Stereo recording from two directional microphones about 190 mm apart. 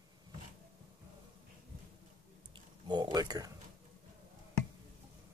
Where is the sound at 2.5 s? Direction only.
25° right (ahead or behind).